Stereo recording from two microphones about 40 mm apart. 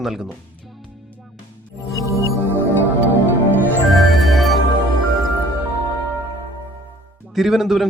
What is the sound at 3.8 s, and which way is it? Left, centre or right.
Music, centre.